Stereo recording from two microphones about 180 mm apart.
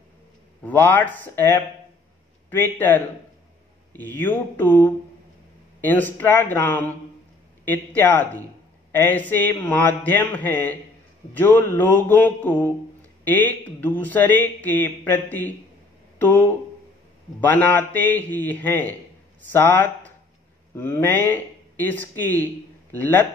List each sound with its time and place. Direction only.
0.7 s a man's voice: 10° left (ahead or behind)
16.2 s a sound: 10° left (ahead or behind)
17.5 s a man's voice: 10° left (ahead or behind)